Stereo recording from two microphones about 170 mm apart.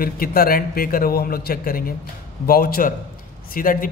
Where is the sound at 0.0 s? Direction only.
60° left (ahead or behind).